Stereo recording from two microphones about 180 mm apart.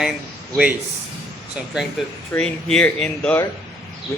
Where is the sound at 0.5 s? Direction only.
5° right (ahead or behind).